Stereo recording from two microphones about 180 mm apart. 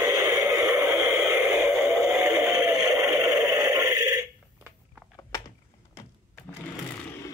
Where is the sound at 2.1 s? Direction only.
15° right (ahead or behind).